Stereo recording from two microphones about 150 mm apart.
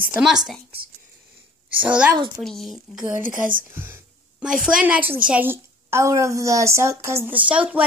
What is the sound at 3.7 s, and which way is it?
A woman's voice, 15° right (ahead or behind).